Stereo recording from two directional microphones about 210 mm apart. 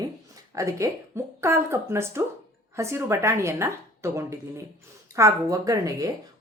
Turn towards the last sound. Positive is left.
turn(degrees=-15)  # may be behind; listen again after turning